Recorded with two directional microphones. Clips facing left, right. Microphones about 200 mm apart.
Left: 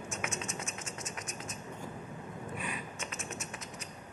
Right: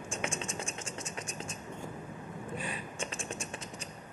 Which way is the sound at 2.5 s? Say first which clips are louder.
Right 3 dB; 30° right (ahead or behind).